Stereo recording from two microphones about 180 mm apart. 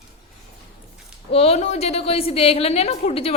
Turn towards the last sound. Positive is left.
turn(degrees=35)  # may be behind; listen again after turning